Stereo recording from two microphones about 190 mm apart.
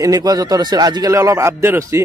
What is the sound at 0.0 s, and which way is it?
A man's voice, 20° right (ahead or behind).